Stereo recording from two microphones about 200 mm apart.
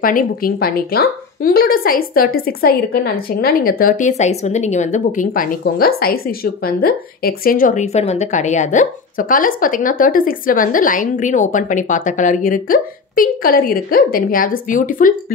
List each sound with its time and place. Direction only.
0.0 s a woman's voice: 45° left (ahead or behind)